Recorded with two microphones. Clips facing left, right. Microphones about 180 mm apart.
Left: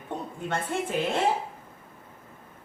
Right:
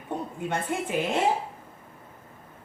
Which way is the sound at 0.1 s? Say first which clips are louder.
Right 1 dB; 10° right (ahead or behind).